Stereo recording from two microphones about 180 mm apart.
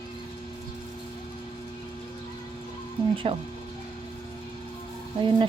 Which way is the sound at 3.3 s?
30° right (ahead or behind).